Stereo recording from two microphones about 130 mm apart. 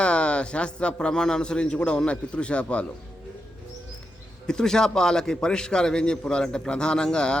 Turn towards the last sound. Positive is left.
turn(degrees=5)  # may be behind; listen again after turning